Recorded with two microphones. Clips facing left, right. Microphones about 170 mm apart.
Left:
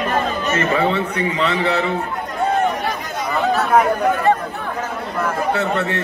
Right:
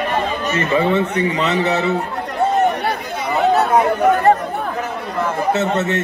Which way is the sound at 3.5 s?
20° right (ahead or behind).